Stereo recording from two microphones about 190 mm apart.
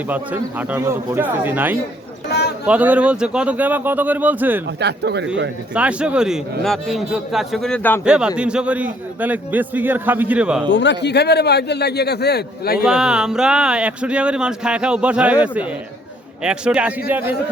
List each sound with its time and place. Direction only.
0.1 s a man's voice: 10° right (ahead or behind)
4.8 s speech: 60° right (ahead or behind)
5.7 s speech: 5° right (ahead or behind); by 8.0 s 10° left (ahead or behind)
8.0 s a man's voice: 5° right (ahead or behind)
10.7 s a man's voice: 70° left (ahead or behind)
12.8 s a man's voice: 5° right (ahead or behind)